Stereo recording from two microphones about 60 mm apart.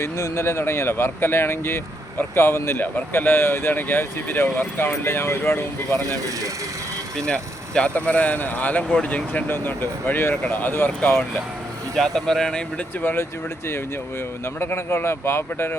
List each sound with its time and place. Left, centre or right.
0.0 s speech: left
2.8 s speech: left
6.0 s speech: right
7.2 s speech: centre
9.5 s speech: left
11.9 s speech: centre
13.0 s speech: left
14.6 s speech: left